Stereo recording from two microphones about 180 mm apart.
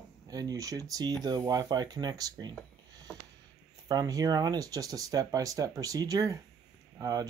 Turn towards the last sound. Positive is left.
turn(degrees=-20)  # may be behind; listen again after turning